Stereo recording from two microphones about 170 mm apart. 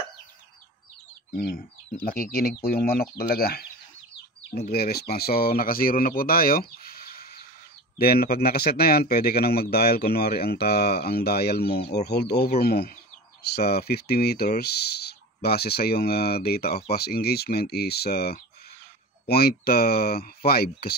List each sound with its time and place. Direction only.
1.3 s speech: 55° left (ahead or behind)
6.8 s a sound: 60° left (ahead or behind)
8.0 s speech: 65° left (ahead or behind)